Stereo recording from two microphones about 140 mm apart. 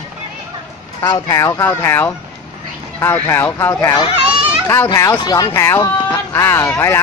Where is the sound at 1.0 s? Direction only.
30° left (ahead or behind).